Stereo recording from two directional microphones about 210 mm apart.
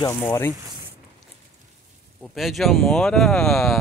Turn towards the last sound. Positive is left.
turn(degrees=0)  # may be behind; listen again after turning